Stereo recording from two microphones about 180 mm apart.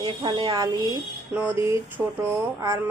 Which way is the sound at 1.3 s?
10° right (ahead or behind).